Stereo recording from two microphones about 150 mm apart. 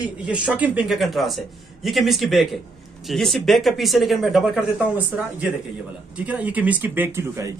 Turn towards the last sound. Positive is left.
turn(degrees=-15)  # may be behind; listen again after turning